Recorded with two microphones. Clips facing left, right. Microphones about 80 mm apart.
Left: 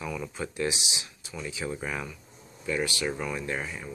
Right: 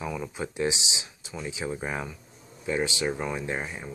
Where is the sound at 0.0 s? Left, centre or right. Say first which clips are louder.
Right 2 dB; centre.